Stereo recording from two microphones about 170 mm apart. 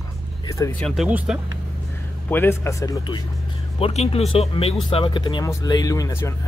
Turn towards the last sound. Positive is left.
turn(degrees=20)  # may be behind; listen again after turning